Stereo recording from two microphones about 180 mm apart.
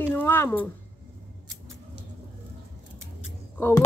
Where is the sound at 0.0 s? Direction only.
10° left (ahead or behind).